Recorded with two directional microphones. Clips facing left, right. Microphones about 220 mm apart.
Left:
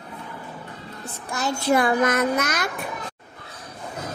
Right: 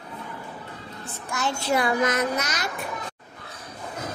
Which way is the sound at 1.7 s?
50° left (ahead or behind).